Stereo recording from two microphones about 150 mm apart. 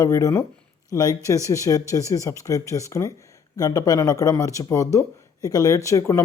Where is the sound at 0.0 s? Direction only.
20° left (ahead or behind).